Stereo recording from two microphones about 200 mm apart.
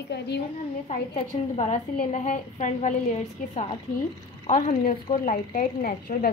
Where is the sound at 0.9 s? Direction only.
35° left (ahead or behind).